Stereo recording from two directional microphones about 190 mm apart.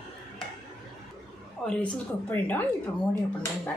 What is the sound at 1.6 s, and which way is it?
Speech, 5° left (ahead or behind).